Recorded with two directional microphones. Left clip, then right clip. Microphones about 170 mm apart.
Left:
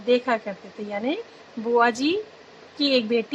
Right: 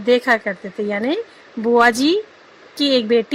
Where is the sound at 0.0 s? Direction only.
20° right (ahead or behind).